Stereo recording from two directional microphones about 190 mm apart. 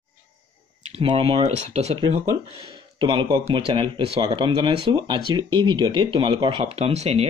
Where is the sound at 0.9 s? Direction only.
30° right (ahead or behind).